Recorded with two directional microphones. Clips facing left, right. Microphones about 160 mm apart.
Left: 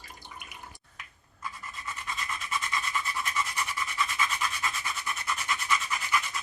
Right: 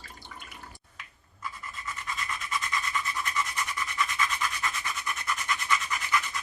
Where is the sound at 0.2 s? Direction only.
15° left (ahead or behind).